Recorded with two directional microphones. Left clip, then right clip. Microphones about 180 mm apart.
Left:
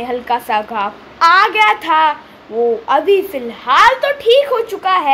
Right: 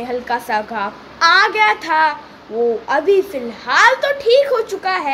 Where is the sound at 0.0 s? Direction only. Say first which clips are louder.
Left 3 dB; 10° left (ahead or behind).